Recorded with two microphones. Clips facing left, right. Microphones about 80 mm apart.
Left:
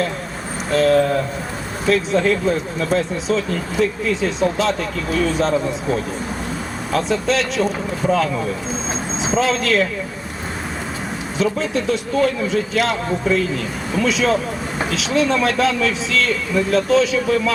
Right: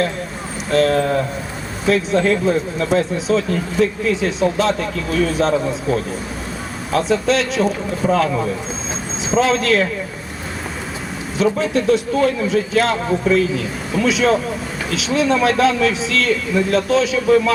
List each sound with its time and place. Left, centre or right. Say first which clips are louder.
0.7 s speech: even; centre
9.3 s speech: right 3 dB; centre
11.5 s speech: right 4 dB; centre